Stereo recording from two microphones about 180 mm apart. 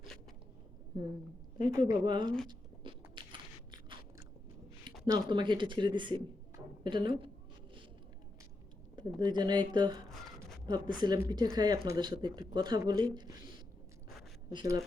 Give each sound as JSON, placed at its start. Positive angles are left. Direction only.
{"t": 1.7, "sound": "a woman's voice", "side_deg": -20}
{"t": 3.2, "sound": "a sound", "side_deg": -25}
{"t": 5.1, "sound": "a woman's voice", "side_deg": -25}
{"t": 9.0, "sound": "a woman's voice", "side_deg": -25}
{"t": 14.5, "sound": "a woman's voice", "side_deg": -20}